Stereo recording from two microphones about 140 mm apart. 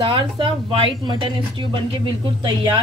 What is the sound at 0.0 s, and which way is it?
Speech, 40° right (ahead or behind).